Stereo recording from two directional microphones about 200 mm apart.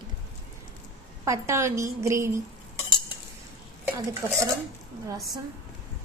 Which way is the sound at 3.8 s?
15° right (ahead or behind).